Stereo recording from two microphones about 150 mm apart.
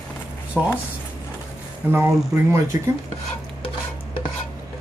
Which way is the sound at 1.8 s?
15° right (ahead or behind).